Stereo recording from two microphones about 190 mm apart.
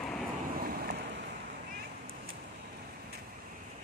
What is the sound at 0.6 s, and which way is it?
Vehicle, 50° right (ahead or behind).